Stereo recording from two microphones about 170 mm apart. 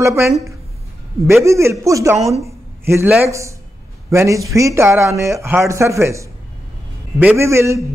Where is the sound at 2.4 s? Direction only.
15° right (ahead or behind).